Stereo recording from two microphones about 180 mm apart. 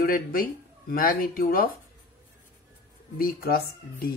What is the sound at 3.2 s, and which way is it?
Speech, 55° left (ahead or behind).